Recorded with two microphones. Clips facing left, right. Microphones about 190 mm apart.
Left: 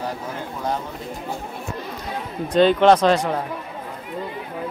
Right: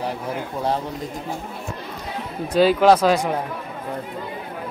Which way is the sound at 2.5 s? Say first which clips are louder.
Even; 5° right (ahead or behind).